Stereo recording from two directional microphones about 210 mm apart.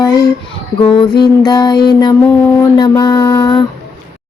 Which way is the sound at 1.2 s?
20° left (ahead or behind).